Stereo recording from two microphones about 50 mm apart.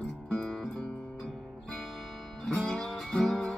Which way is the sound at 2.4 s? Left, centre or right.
Centre.